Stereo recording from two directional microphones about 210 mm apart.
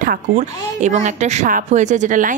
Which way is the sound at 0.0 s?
35° right (ahead or behind).